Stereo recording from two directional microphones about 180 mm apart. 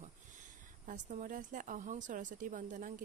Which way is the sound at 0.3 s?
45° right (ahead or behind).